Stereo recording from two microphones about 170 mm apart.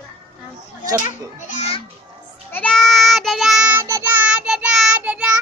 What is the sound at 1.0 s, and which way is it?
Speech, 45° left (ahead or behind).